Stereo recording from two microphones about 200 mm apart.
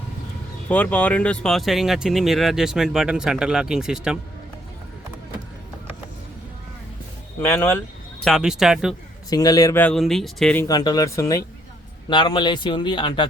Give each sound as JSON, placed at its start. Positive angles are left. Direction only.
{"t": 0.7, "sound": "speech", "side_deg": 5}
{"t": 7.4, "sound": "speech", "side_deg": 10}
{"t": 8.2, "sound": "speech", "side_deg": 0}
{"t": 9.3, "sound": "a man's voice", "side_deg": 20}